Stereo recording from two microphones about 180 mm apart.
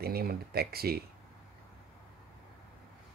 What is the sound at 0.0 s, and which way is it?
Speech, 55° right (ahead or behind).